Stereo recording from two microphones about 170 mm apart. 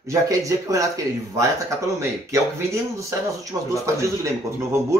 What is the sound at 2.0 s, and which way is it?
Speech, 15° right (ahead or behind).